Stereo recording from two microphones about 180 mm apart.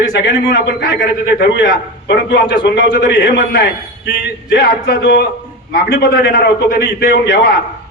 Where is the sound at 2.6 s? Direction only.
60° left (ahead or behind).